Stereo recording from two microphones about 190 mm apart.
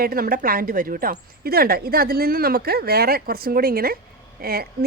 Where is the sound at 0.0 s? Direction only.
50° right (ahead or behind).